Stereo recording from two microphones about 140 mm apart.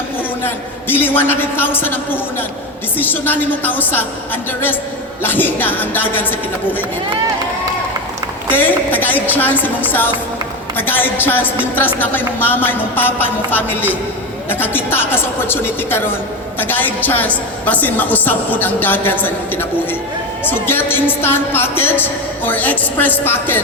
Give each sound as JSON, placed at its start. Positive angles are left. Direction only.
{"t": 0.4, "sound": "a woman's voice", "side_deg": 15}
{"t": 5.2, "sound": "a woman's voice", "side_deg": 15}
{"t": 8.4, "sound": "a woman's voice", "side_deg": 15}